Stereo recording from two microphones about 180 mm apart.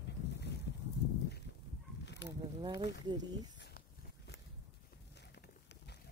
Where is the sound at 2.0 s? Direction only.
75° left (ahead or behind).